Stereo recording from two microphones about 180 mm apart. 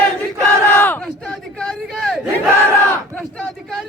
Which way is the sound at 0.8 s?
10° left (ahead or behind).